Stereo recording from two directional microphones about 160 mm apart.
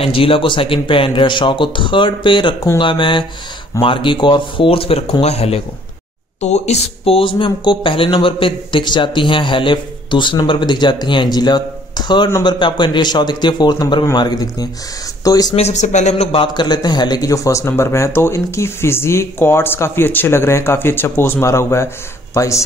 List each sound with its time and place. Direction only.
0.0 s speech: 35° left (ahead or behind)
15.5 s a man's voice: 45° left (ahead or behind); by 22.6 s 20° left (ahead or behind)